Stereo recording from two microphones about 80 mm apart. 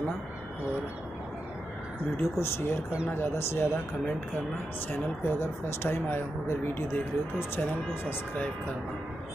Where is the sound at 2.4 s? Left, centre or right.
Left.